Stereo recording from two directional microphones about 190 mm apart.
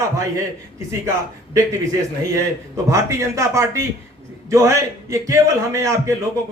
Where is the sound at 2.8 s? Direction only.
15° right (ahead or behind).